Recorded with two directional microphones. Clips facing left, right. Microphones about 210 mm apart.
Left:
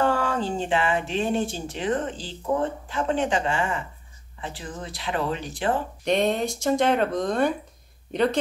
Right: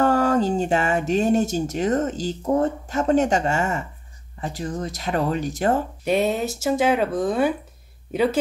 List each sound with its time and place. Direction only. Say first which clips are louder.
0.0 s speech: right 5 dB; 40° right (ahead or behind)
6.0 s speech: right 1 dB; 5° right (ahead or behind)